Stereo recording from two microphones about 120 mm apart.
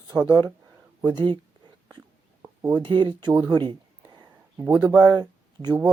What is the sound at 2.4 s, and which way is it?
Speech, 35° right (ahead or behind).